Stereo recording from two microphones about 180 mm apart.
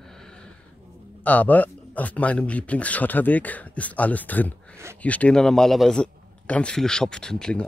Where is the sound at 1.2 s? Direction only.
10° left (ahead or behind).